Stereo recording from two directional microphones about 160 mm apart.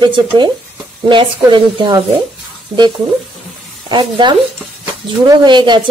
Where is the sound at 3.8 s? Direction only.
30° right (ahead or behind).